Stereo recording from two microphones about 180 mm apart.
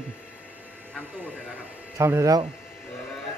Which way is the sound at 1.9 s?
15° right (ahead or behind).